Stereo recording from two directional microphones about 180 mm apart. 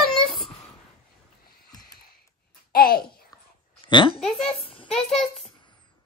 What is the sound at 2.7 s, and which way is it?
Speech, 55° left (ahead or behind).